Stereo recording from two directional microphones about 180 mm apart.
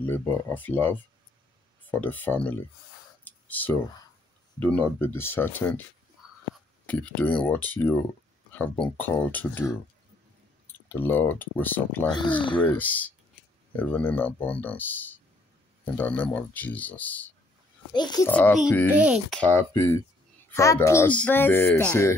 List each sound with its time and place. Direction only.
0.0 s speech: 10° left (ahead or behind)
3.3 s clicking: 10° left (ahead or behind)
4.6 s speech: 10° left (ahead or behind)
6.9 s speech: 10° left (ahead or behind)
8.5 s a sound: 10° left (ahead or behind)
8.8 s speech: 10° left (ahead or behind)
10.9 s speech: 10° left (ahead or behind)
17.9 s a child's voice: 20° left (ahead or behind)
18.9 s speech: 5° right (ahead or behind)
19.4 s speech: 10° left (ahead or behind)